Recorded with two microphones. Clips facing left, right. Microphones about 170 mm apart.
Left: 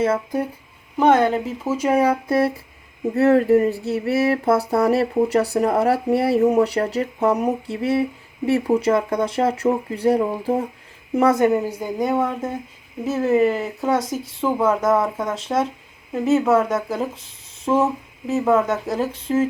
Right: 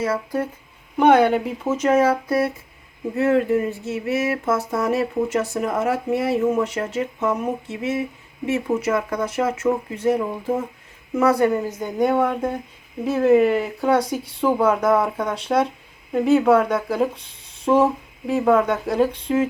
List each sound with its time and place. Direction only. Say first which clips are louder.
0.0 s a woman's voice: left 3 dB; 20° left (ahead or behind)
0.9 s speech: right 1 dB; centre (ahead or behind)
1.6 s speech: even; 10° left (ahead or behind)
2.2 s a woman's voice: left 2 dB; 25° left (ahead or behind)
3.2 s a sound: left 4 dB; 40° left (ahead or behind)
11.1 s a woman's voice: left 1 dB; 25° left (ahead or behind)
11.8 s speech: right 2 dB; centre (ahead or behind)